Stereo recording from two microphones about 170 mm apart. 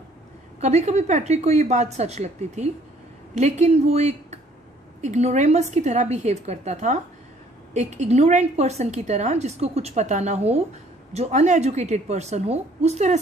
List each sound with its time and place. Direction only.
0.6 s a woman's voice: 40° right (ahead or behind)